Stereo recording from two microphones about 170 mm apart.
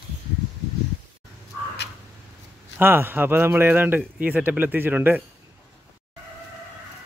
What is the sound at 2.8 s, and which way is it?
A man's voice, 10° right (ahead or behind).